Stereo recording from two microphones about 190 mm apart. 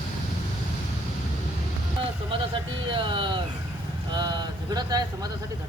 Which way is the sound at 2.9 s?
25° right (ahead or behind).